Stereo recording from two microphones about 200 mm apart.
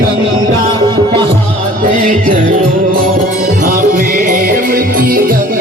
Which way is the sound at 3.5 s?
40° right (ahead or behind).